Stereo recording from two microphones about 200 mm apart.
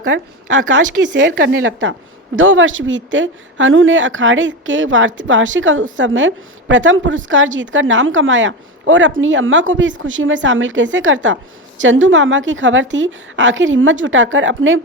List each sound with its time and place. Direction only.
0.0 s a woman's voice: 75° right (ahead or behind)
1.0 s a woman's voice: 65° right (ahead or behind)